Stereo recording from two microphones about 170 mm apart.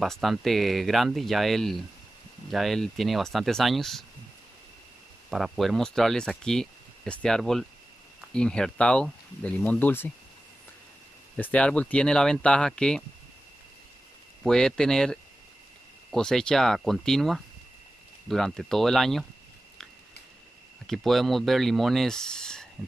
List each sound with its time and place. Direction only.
0.0 s speech: centre (ahead or behind)
5.3 s speech: centre (ahead or behind)
11.3 s speech: 10° left (ahead or behind)
14.4 s speech: 5° left (ahead or behind)
20.8 s speech: centre (ahead or behind)